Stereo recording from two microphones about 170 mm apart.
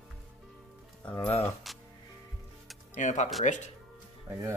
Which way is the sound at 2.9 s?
45° left (ahead or behind).